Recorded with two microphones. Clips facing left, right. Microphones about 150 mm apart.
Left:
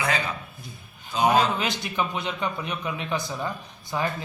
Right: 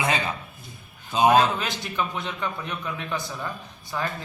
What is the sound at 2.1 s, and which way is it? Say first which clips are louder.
A man's voice: left 2 dB; 15° left (ahead or behind).